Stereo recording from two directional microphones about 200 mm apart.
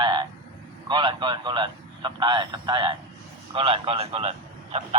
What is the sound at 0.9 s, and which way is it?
A man's voice, 25° right (ahead or behind).